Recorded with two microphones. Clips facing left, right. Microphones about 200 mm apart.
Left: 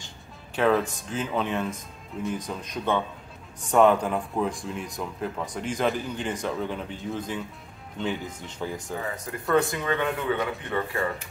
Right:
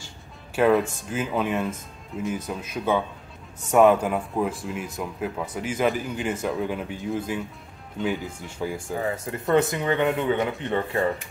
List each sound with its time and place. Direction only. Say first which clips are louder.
0.6 s speech: right 3 dB; 5° right (ahead or behind)
9.1 s speech: right 2 dB; 25° right (ahead or behind)